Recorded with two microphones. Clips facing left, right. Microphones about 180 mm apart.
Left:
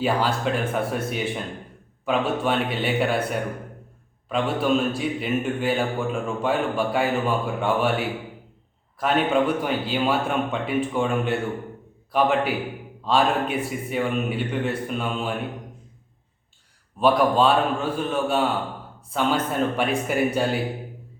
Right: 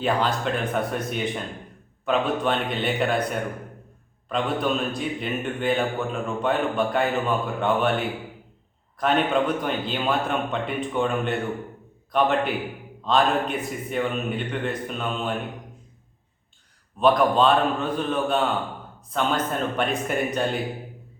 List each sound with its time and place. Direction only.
0.0 s a man's voice: 5° left (ahead or behind)
17.0 s a man's voice: 5° left (ahead or behind)